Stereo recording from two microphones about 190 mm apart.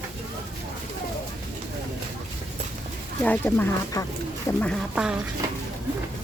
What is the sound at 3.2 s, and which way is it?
Speech, 10° left (ahead or behind).